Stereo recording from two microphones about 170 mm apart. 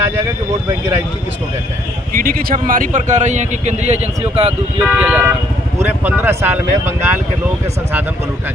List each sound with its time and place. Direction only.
2.1 s a man's voice: 60° right (ahead or behind); by 4.5 s 40° right (ahead or behind)
4.8 s speech: 5° right (ahead or behind)